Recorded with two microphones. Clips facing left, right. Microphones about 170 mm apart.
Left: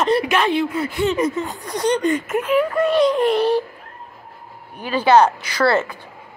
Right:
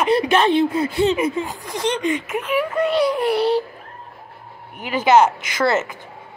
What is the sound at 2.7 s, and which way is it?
Speech, 15° right (ahead or behind).